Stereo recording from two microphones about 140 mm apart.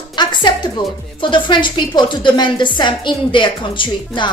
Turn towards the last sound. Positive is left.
turn(degrees=35)  # may be behind; listen again after turning